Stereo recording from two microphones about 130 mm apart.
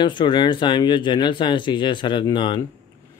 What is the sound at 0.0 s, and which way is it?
Speech, 40° left (ahead or behind).